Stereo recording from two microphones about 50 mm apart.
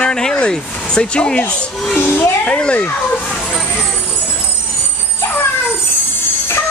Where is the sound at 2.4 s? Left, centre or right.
Left.